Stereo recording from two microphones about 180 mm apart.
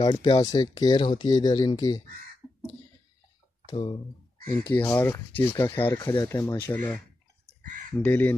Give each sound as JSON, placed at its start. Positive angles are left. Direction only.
{"t": 0.0, "sound": "speech", "side_deg": 25}
{"t": 3.6, "sound": "speech", "side_deg": 20}
{"t": 5.9, "sound": "speech", "side_deg": 20}
{"t": 8.0, "sound": "speech", "side_deg": 10}